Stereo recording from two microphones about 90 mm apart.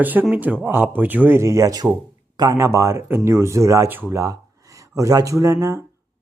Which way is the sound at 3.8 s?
25° right (ahead or behind).